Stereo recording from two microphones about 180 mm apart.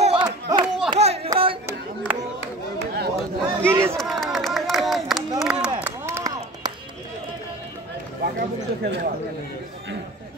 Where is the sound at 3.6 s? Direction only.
15° right (ahead or behind).